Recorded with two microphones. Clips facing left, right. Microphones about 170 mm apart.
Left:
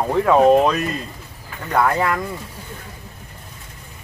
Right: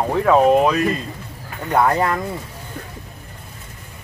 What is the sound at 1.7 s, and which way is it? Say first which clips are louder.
Speech: right 1 dB; 25° right (ahead or behind).